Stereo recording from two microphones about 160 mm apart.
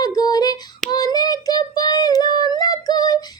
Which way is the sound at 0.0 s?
25° left (ahead or behind).